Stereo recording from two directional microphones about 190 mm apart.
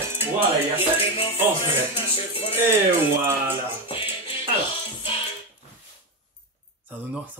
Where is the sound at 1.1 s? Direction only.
30° left (ahead or behind).